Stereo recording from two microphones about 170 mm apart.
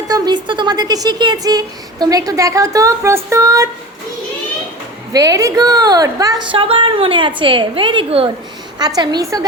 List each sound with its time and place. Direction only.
0.1 s speech: 25° right (ahead or behind)
5.1 s speech: 20° right (ahead or behind)
9.0 s speech: 20° right (ahead or behind)